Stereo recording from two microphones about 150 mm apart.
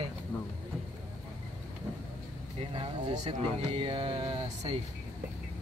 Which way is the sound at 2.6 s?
40° right (ahead or behind).